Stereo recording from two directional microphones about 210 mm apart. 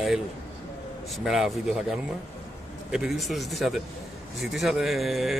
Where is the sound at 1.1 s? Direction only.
Centre (ahead or behind).